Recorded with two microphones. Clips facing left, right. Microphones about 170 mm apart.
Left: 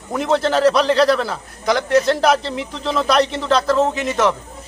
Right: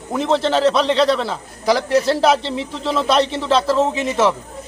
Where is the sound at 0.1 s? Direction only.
Centre (ahead or behind).